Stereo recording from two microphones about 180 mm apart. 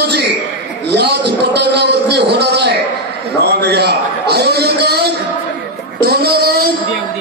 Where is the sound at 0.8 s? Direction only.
65° right (ahead or behind).